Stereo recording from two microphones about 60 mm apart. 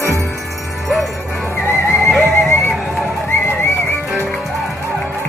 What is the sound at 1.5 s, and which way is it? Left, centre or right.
Music, left.